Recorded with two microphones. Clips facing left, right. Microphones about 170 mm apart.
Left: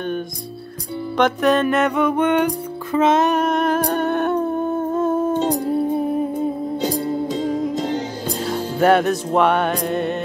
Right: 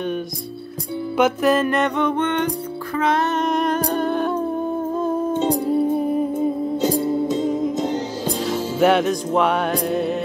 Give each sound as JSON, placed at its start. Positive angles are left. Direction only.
{"t": 1.1, "sound": "music", "side_deg": -5}
{"t": 2.9, "sound": "music", "side_deg": 20}
{"t": 3.3, "sound": "music", "side_deg": 5}
{"t": 4.9, "sound": "humming", "side_deg": 5}
{"t": 5.6, "sound": "music", "side_deg": 0}